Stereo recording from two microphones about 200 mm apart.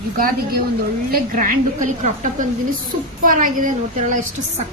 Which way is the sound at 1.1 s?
40° right (ahead or behind).